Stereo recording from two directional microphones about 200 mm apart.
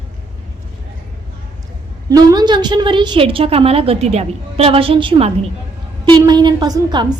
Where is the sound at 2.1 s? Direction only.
20° right (ahead or behind).